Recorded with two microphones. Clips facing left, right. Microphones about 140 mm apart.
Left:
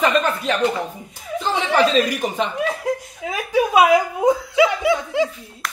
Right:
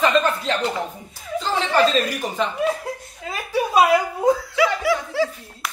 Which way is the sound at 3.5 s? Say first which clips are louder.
Left 2 dB; 15° left (ahead or behind).